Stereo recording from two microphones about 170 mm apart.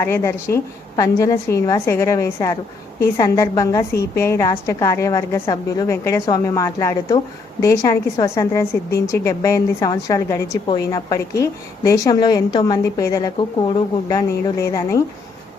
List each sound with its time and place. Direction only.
0.0 s a woman's voice: 15° left (ahead or behind)